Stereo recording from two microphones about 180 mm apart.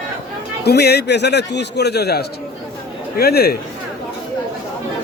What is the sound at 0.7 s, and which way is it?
A man's voice, 65° left (ahead or behind).